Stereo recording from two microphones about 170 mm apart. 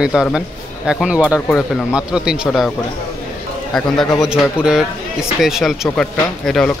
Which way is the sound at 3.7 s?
5° left (ahead or behind).